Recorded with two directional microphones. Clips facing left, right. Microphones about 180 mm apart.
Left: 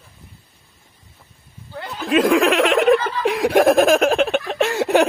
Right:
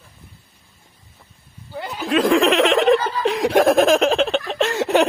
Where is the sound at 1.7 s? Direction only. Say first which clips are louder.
Left 1 dB; centre (ahead or behind).